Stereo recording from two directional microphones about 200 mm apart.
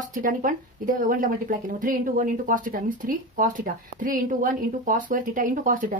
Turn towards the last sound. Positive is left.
turn(degrees=-40)  # may be behind; listen again after turning